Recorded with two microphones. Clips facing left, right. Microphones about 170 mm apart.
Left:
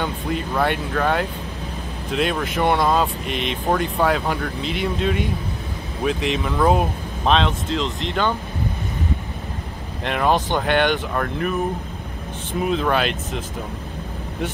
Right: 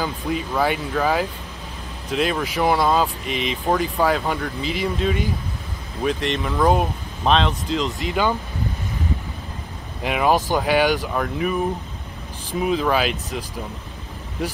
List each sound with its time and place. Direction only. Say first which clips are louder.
0.0 s speech: even; centre (ahead or behind)
10.0 s speech: right 1 dB; 5° right (ahead or behind)